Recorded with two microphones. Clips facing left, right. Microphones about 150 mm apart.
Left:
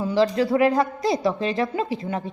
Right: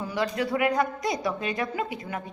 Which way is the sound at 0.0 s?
30° left (ahead or behind).